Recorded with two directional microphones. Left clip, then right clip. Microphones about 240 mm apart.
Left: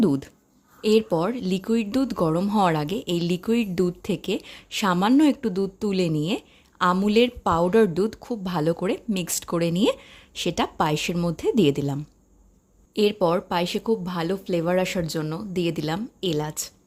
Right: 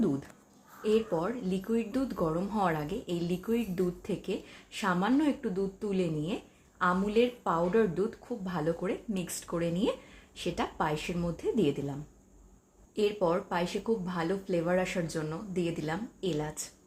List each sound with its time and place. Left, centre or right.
0.8 s speech: left